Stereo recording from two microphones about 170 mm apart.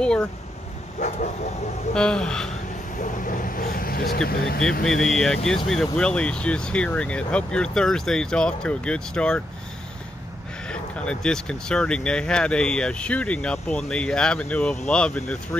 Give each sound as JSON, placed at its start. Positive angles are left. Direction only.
{"t": 0.0, "sound": "speech", "side_deg": 5}
{"t": 0.9, "sound": "bow-wow", "side_deg": 45}
{"t": 2.0, "sound": "speech", "side_deg": 5}
{"t": 3.0, "sound": "speech", "side_deg": 50}
{"t": 4.8, "sound": "speech", "side_deg": 5}
{"t": 10.7, "sound": "speech", "side_deg": 5}